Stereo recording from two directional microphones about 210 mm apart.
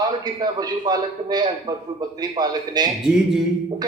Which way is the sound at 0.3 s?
20° right (ahead or behind).